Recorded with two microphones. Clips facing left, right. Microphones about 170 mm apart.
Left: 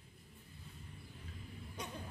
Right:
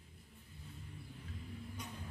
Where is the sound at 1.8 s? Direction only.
70° left (ahead or behind).